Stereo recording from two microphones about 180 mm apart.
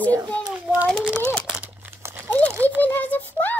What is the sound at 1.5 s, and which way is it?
Crumpling, 10° right (ahead or behind).